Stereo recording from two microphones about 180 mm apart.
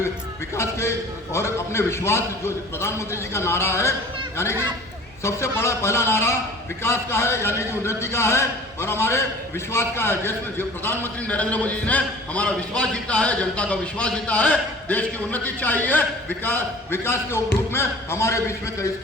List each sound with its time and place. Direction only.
0.5 s a man's voice: 15° left (ahead or behind)
5.2 s a man's voice: 15° left (ahead or behind)